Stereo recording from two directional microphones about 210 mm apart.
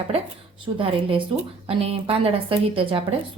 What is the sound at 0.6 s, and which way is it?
A woman's voice, 25° right (ahead or behind).